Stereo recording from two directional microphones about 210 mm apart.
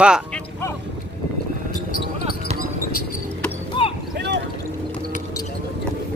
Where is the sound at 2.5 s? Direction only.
45° left (ahead or behind).